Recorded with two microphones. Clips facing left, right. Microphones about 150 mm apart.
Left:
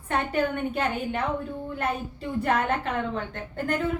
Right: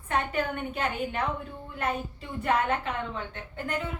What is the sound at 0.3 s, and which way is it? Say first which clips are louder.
Speech: left 4 dB; 35° left (ahead or behind).